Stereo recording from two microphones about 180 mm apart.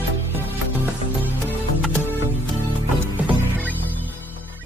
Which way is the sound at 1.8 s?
10° left (ahead or behind).